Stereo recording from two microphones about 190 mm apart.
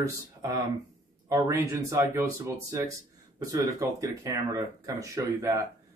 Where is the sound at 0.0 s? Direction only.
15° right (ahead or behind).